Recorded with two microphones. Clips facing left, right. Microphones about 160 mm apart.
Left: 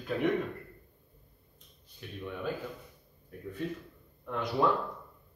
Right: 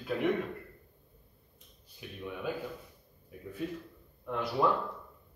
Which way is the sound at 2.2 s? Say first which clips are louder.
Even; 5° right (ahead or behind).